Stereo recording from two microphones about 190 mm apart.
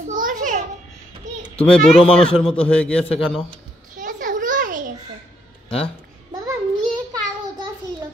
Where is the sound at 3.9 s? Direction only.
45° right (ahead or behind).